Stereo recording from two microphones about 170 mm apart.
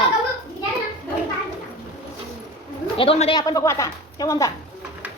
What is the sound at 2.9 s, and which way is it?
Speech, 35° left (ahead or behind).